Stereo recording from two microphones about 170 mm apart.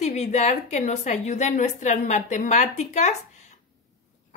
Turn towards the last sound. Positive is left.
turn(degrees=45)  # may be behind; listen again after turning